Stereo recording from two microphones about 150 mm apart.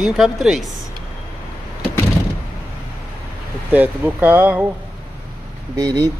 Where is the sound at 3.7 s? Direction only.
10° right (ahead or behind).